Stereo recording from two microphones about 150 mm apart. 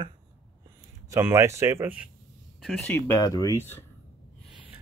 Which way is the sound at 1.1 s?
20° right (ahead or behind).